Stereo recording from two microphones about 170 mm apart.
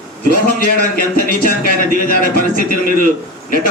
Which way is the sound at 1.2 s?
55° left (ahead or behind).